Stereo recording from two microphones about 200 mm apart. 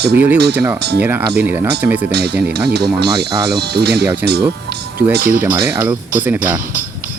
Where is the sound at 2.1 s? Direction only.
55° right (ahead or behind).